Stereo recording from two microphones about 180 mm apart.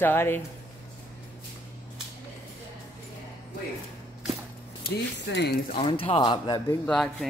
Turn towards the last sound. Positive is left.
turn(degrees=5)  # may be behind; listen again after turning